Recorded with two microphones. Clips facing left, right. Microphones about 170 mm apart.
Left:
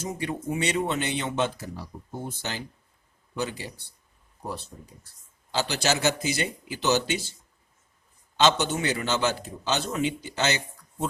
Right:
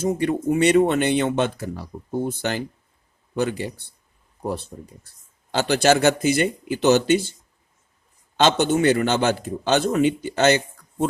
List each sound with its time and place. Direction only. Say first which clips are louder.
0.0 s a man's voice: right 10 dB; 55° right (ahead or behind)
5.5 s a man's voice: right 8 dB; 55° right (ahead or behind)
8.4 s a man's voice: right 5 dB; 55° right (ahead or behind)